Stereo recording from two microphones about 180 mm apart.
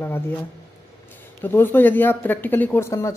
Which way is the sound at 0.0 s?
15° left (ahead or behind).